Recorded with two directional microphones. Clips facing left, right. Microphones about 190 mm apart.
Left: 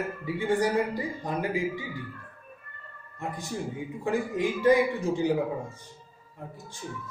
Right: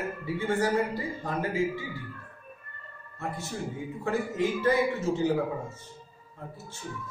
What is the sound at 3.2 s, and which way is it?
A man's voice, 15° left (ahead or behind).